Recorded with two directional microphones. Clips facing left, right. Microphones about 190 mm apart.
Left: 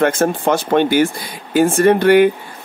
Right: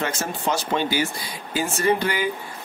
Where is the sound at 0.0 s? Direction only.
55° left (ahead or behind).